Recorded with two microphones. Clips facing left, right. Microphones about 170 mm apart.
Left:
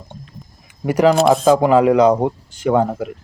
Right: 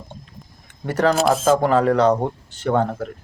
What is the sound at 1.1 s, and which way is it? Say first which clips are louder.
Speech: left 4 dB; centre (ahead or behind).